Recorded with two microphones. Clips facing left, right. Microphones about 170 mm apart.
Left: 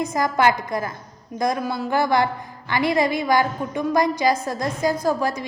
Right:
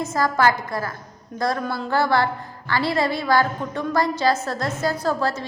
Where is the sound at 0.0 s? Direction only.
15° left (ahead or behind).